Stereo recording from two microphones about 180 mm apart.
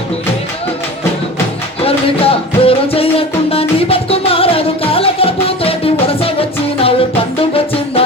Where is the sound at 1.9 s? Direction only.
30° left (ahead or behind).